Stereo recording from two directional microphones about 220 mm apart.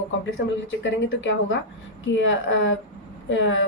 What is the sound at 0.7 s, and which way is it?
A woman's voice, 60° left (ahead or behind).